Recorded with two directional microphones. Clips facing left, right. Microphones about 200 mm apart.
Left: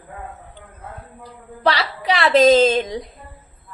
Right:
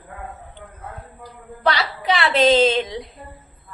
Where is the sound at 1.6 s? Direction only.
35° left (ahead or behind).